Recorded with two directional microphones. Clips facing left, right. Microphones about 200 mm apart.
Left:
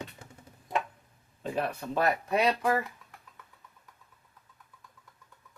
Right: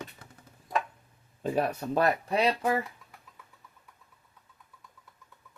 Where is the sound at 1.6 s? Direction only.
40° right (ahead or behind).